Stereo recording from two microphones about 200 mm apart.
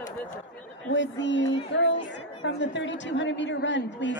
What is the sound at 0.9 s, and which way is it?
A woman's voice, 65° left (ahead or behind).